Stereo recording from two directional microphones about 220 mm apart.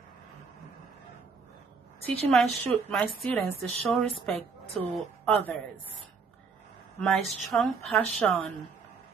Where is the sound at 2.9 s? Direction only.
Centre (ahead or behind).